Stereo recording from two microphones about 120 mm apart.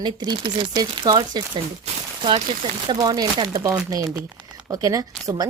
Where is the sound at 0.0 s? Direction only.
40° right (ahead or behind).